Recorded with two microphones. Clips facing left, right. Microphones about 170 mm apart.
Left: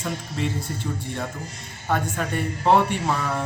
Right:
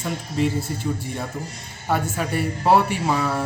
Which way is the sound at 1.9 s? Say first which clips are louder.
Right 2 dB; 5° right (ahead or behind).